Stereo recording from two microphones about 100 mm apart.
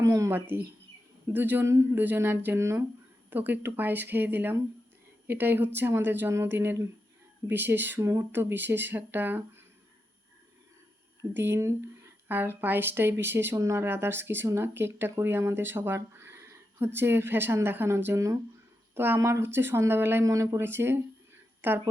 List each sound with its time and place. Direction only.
0.0 s speech: 35° right (ahead or behind)
0.3 s speech: 20° right (ahead or behind)
11.2 s speech: 25° right (ahead or behind)